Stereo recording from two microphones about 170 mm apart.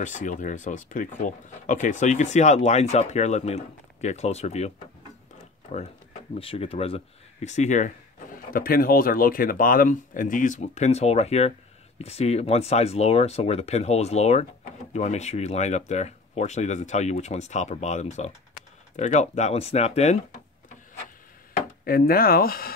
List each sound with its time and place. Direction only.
0.0 s speech: 45° left (ahead or behind)
6.4 s speech: 35° left (ahead or behind)
8.5 s speech: 60° left (ahead or behind); by 20.2 s 40° left (ahead or behind)
21.8 s speech: 60° left (ahead or behind)